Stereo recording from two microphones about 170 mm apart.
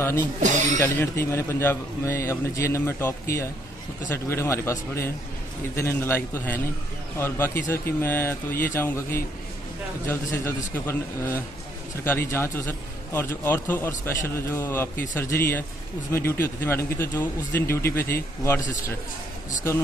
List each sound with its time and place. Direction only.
0.4 s speech: 45° right (ahead or behind)
0.7 s a man's voice: 15° left (ahead or behind)